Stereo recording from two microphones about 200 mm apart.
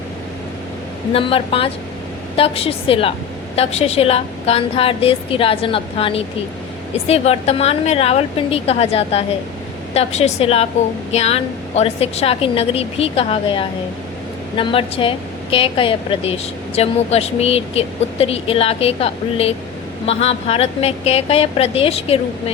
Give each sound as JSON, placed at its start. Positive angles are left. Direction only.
{"t": 1.1, "sound": "a woman's voice", "side_deg": 30}